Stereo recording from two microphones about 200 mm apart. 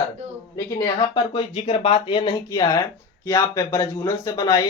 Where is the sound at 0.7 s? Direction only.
25° left (ahead or behind).